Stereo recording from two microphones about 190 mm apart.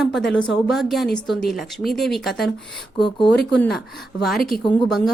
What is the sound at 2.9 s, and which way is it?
Speech, 25° left (ahead or behind).